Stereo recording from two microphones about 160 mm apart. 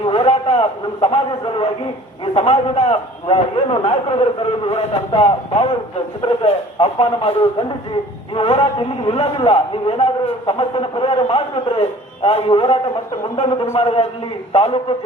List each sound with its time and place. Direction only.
0.0 s a man's voice: 35° left (ahead or behind)
8.4 s a man's voice: 35° left (ahead or behind)